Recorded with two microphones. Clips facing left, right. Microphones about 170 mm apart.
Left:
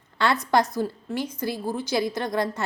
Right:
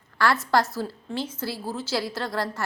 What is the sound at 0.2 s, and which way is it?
A woman's voice, 20° left (ahead or behind).